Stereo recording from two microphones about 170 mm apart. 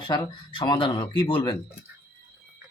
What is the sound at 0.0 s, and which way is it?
Speech, 25° left (ahead or behind).